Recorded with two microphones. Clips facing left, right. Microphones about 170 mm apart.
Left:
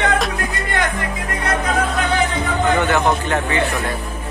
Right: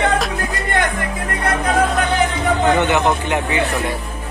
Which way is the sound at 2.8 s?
20° right (ahead or behind).